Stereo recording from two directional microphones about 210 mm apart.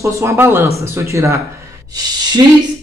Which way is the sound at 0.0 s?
15° right (ahead or behind).